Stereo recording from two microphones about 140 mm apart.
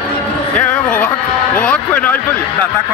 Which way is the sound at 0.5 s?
10° left (ahead or behind).